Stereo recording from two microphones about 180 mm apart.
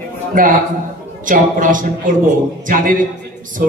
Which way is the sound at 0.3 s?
50° right (ahead or behind).